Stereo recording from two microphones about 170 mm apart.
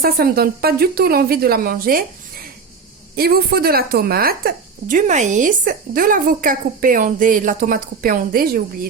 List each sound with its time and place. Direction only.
0.0 s speech: 60° right (ahead or behind)
3.2 s speech: 65° right (ahead or behind)